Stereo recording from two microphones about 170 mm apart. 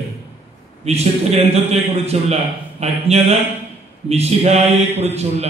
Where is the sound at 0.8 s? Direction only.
40° right (ahead or behind).